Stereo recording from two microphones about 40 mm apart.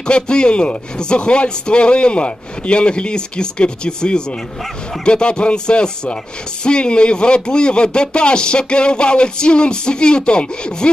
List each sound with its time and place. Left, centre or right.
0.0 s a man's voice: left